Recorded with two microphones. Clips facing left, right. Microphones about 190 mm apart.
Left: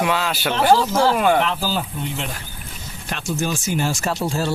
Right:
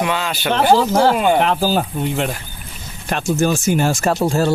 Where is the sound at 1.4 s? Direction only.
55° right (ahead or behind).